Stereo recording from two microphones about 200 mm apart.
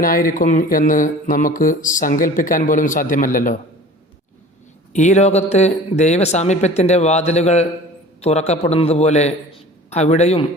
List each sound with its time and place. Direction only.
0.0 s speech: 45° left (ahead or behind)
4.9 s speech: 35° left (ahead or behind)